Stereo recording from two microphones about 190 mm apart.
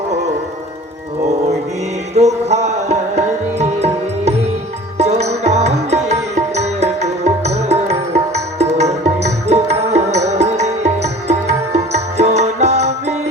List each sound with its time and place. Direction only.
2.1 s music: 35° right (ahead or behind)
4.9 s music: 35° right (ahead or behind)